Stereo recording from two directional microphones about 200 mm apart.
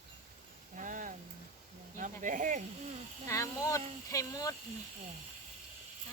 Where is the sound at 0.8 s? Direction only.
40° right (ahead or behind).